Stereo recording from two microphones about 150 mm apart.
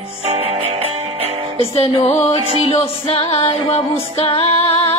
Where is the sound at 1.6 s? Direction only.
45° left (ahead or behind).